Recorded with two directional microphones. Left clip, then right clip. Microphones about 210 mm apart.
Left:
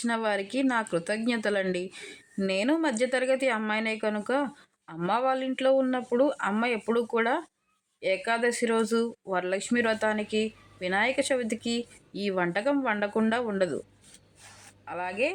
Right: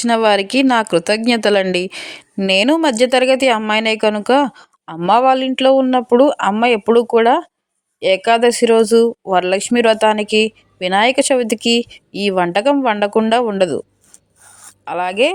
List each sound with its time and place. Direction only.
0.0 s speech: 35° right (ahead or behind)
14.8 s speech: 40° right (ahead or behind)